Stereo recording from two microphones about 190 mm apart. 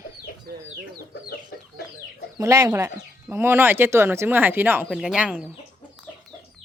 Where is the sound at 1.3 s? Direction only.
55° left (ahead or behind).